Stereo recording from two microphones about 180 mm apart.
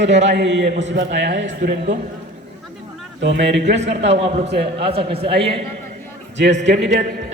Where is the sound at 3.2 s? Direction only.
80° right.